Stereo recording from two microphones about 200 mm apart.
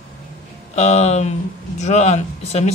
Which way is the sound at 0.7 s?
30° left (ahead or behind).